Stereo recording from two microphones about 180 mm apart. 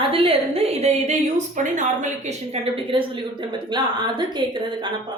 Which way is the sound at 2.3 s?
30° right (ahead or behind).